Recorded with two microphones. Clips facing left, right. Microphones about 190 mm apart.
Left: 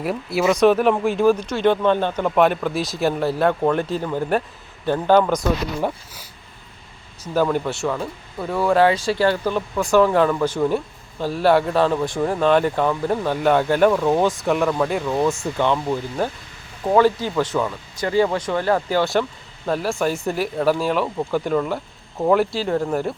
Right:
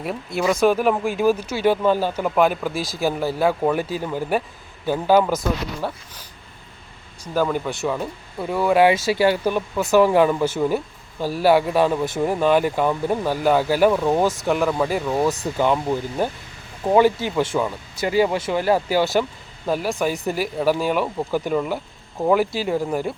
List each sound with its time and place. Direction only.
0.0 s speech: 5° left (ahead or behind)
5.8 s speech: 15° left (ahead or behind)
7.3 s speech: 5° right (ahead or behind)
17.5 s speech: 10° right (ahead or behind)